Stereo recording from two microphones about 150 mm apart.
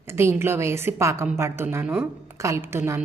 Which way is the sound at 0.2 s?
15° right (ahead or behind).